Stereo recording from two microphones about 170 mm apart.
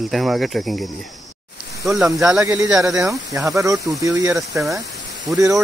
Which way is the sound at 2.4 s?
20° right (ahead or behind).